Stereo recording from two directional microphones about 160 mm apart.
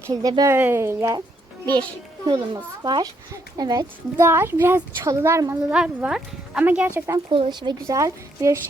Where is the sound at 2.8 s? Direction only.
25° right (ahead or behind).